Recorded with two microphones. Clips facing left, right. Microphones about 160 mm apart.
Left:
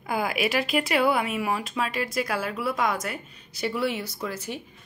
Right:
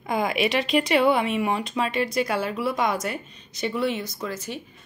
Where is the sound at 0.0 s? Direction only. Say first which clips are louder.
Right 3 dB; 5° left (ahead or behind).